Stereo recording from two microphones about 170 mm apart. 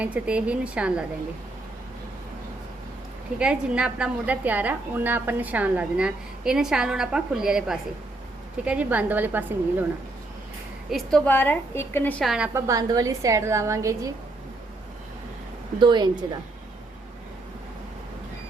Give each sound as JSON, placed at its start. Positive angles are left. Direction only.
{"t": 0.0, "sound": "a woman's voice", "side_deg": -5}
{"t": 3.3, "sound": "a woman's voice", "side_deg": -5}
{"t": 10.9, "sound": "a woman's voice", "side_deg": 5}
{"t": 12.2, "sound": "a woman's voice", "side_deg": 0}
{"t": 12.5, "sound": "a woman's voice", "side_deg": -20}
{"t": 15.8, "sound": "a woman's voice", "side_deg": -25}